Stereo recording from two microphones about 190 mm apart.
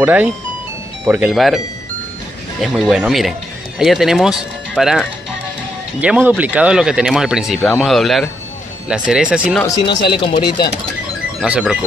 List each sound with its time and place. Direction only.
0.0 s speech: 10° right (ahead or behind)
2.6 s speech: centre (ahead or behind)
10.0 s speech: 25° left (ahead or behind)
11.4 s speech: 5° right (ahead or behind)